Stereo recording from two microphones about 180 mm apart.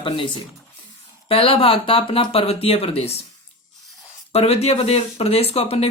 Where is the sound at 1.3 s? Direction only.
30° left (ahead or behind).